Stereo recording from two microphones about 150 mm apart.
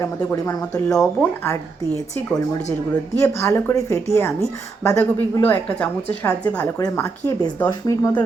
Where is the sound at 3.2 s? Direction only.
15° left (ahead or behind).